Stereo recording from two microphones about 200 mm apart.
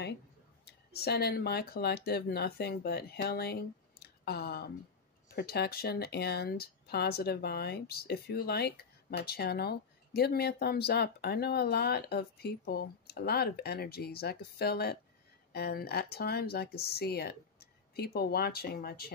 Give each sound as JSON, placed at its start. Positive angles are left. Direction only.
{"t": 0.7, "sound": "speech", "side_deg": 55}